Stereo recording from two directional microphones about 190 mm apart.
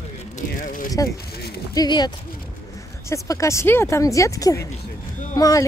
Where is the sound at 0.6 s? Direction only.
45° left (ahead or behind).